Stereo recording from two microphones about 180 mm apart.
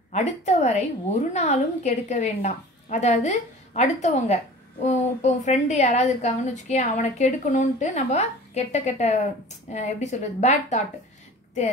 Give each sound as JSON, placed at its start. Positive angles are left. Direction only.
{"t": 0.1, "sound": "a woman's voice", "side_deg": 40}